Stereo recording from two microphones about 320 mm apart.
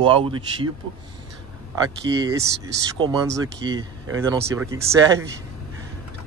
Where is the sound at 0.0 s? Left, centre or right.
Centre.